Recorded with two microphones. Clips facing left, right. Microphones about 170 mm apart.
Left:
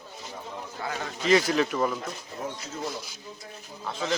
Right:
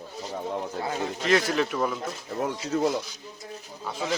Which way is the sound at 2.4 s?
70° right (ahead or behind).